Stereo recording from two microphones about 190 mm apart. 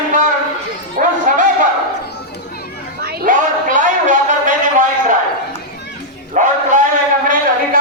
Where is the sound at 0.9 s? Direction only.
45° right (ahead or behind).